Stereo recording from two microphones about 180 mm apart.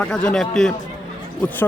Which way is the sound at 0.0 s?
5° left (ahead or behind).